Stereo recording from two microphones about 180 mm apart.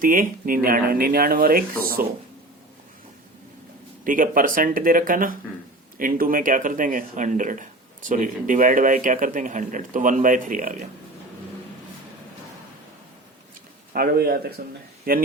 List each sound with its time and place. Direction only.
0.0 s speech: 50° right (ahead or behind)
4.0 s speech: 50° right (ahead or behind)
13.9 s a man's voice: 55° right (ahead or behind)